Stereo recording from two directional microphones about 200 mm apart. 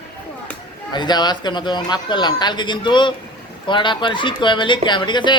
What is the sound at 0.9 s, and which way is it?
A man's voice, 20° left (ahead or behind).